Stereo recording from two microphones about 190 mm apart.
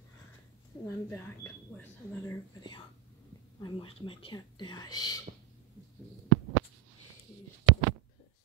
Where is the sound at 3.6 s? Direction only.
25° left (ahead or behind).